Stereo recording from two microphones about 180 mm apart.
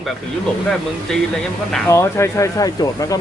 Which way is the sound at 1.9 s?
15° left (ahead or behind).